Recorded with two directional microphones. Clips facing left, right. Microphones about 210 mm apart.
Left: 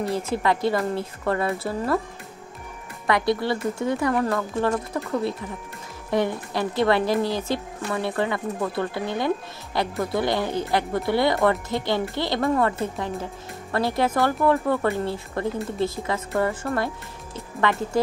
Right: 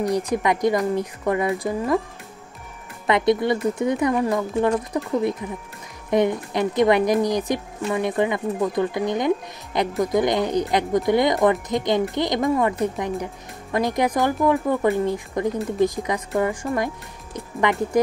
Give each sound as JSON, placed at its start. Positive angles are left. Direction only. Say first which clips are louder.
{"t": 0.1, "sound": "speech", "louder": "right 2 dB", "side_deg": -15}
{"t": 3.1, "sound": "speech", "louder": "right 3 dB", "side_deg": -20}